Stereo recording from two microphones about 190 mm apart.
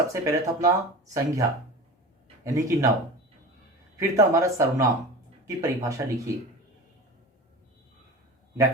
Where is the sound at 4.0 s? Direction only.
15° right (ahead or behind).